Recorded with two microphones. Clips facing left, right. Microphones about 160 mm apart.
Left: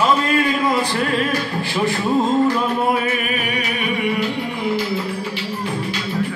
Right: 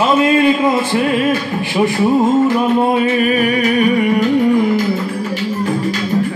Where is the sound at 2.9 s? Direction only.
25° right (ahead or behind).